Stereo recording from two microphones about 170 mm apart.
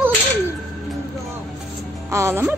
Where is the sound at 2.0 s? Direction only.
15° right (ahead or behind).